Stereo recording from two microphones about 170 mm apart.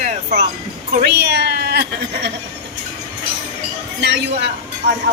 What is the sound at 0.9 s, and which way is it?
Speech, 75° right (ahead or behind).